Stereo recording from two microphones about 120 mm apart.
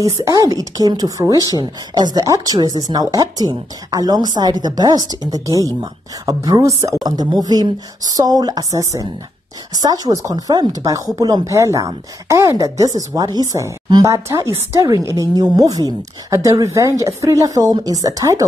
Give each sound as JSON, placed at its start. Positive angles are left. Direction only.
{"t": 0.0, "sound": "speech", "side_deg": -25}